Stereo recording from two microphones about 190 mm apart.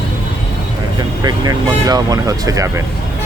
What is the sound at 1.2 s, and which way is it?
Speech, 20° right (ahead or behind).